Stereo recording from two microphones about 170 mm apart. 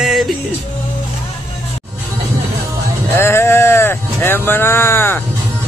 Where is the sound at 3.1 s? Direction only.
15° left (ahead or behind).